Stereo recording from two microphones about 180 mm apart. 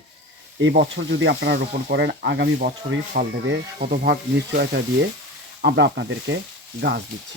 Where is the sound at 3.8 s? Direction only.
65° right (ahead or behind).